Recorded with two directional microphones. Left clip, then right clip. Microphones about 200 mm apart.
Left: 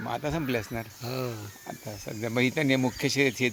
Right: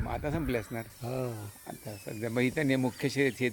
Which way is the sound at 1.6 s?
30° left (ahead or behind).